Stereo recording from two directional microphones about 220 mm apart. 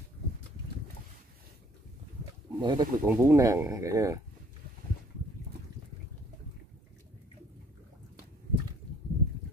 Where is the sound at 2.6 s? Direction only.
20° right (ahead or behind).